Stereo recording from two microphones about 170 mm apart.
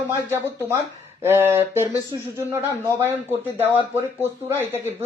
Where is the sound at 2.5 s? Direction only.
15° right (ahead or behind).